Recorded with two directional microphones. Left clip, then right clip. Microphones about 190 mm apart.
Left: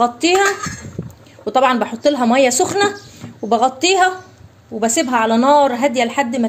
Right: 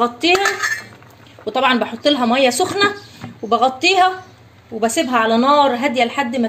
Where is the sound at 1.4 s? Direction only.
15° left (ahead or behind).